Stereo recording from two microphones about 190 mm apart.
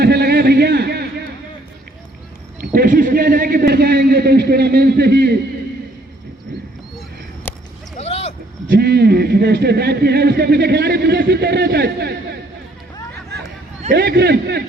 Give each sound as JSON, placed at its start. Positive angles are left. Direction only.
{"t": 0.0, "sound": "a sound", "side_deg": -60}
{"t": 2.6, "sound": "a man's voice", "side_deg": -50}
{"t": 7.5, "sound": "a sound", "side_deg": 10}
{"t": 7.9, "sound": "vehicle", "side_deg": 35}
{"t": 8.7, "sound": "a man's voice", "side_deg": -60}
{"t": 13.9, "sound": "a man's voice", "side_deg": -60}